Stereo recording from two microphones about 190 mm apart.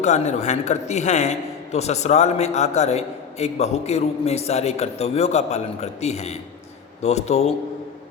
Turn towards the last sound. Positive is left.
turn(degrees=35)  # may be behind; listen again after turning